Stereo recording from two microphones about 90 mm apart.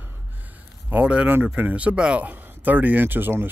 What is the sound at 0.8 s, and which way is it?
Speech, 15° right (ahead or behind).